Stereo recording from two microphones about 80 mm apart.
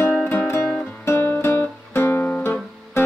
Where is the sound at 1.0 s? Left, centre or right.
Left.